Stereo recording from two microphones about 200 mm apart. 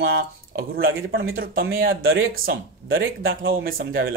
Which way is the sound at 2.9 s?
50° right (ahead or behind).